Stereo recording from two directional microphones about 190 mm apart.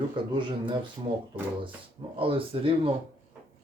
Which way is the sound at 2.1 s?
30° right (ahead or behind).